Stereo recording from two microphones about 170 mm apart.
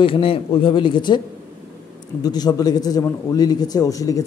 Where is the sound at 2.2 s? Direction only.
25° left (ahead or behind).